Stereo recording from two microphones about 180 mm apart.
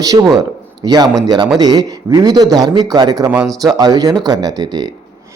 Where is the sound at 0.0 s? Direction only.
20° right (ahead or behind).